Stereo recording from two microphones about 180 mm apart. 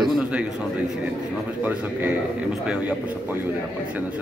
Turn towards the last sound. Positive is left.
turn(degrees=-10)  # may be behind; listen again after turning